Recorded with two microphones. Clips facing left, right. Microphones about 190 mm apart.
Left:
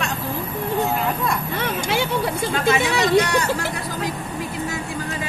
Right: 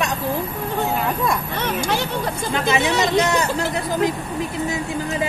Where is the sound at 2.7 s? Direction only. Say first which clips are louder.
Even; 25° right (ahead or behind).